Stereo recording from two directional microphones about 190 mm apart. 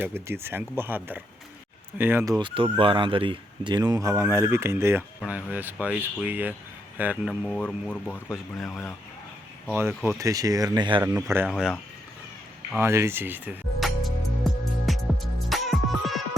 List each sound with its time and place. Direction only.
0.0 s speech: 10° right (ahead or behind)
2.7 s speech: 25° right (ahead or behind); by 9.0 s 15° left (ahead or behind)
9.7 s speech: 15° right (ahead or behind)
11.1 s speech: 10° right (ahead or behind)
11.4 s speech: centre (ahead or behind)
12.8 s music: 15° right (ahead or behind)